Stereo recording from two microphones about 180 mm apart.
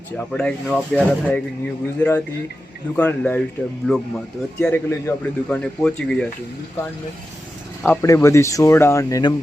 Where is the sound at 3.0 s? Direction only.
10° left (ahead or behind).